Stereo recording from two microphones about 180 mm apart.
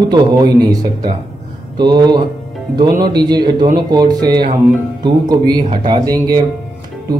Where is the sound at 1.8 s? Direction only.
25° right (ahead or behind).